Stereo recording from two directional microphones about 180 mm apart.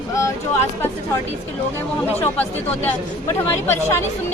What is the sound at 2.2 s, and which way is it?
Speech, 10° left (ahead or behind).